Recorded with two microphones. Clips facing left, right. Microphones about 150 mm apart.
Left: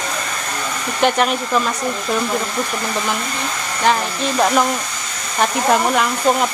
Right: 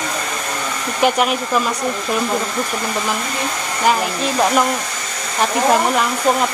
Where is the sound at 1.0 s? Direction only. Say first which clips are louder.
Even; 5° right (ahead or behind).